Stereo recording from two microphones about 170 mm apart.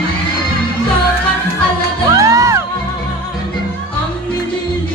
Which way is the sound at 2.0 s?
20° right (ahead or behind).